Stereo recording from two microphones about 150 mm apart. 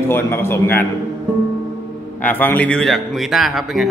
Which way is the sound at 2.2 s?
10° left (ahead or behind).